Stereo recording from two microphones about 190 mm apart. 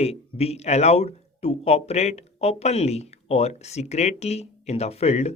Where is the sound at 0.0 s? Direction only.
35° left (ahead or behind).